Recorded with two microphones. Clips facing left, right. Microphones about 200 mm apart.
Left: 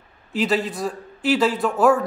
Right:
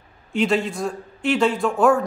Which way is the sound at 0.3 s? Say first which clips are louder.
Right 1 dB; centre (ahead or behind).